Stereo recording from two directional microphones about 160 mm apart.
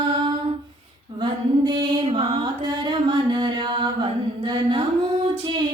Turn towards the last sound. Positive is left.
turn(degrees=-30)  # may be behind; listen again after turning